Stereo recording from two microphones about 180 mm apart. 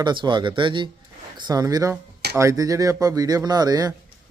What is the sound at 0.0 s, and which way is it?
Speech, 25° right (ahead or behind).